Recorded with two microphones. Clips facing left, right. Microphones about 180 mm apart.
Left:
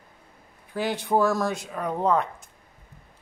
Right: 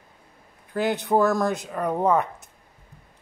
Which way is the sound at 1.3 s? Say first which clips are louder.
Right 2 dB; 15° right (ahead or behind).